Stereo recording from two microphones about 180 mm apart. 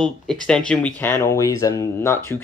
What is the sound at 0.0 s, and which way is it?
Speech, 5° left (ahead or behind).